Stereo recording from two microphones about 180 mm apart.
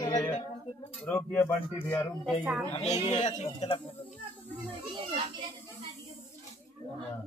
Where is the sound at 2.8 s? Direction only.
40° left (ahead or behind).